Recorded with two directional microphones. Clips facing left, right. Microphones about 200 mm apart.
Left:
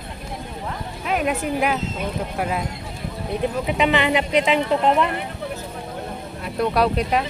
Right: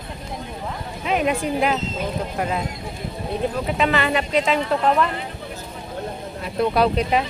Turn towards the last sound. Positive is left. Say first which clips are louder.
# right 1 dB
turn(degrees=0)  # may be behind; listen again after turning